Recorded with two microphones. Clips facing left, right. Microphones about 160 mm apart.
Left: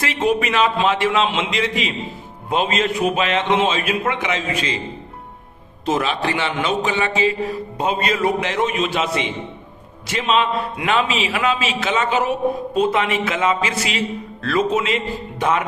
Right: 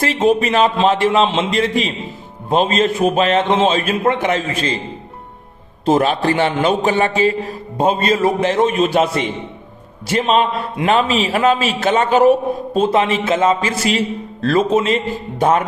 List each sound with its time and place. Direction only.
0.0 s a man's voice: 35° right (ahead or behind)
2.5 s a man's voice: 35° right (ahead or behind)
6.0 s speech: 50° right (ahead or behind)
6.3 s a man's voice: 35° right (ahead or behind)
12.7 s a man's voice: 25° right (ahead or behind)
15.4 s speech: 45° right (ahead or behind)